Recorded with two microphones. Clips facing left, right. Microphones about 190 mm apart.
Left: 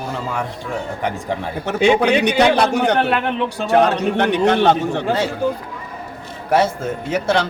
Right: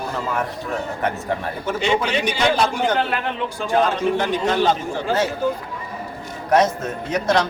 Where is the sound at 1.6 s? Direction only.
70° left (ahead or behind).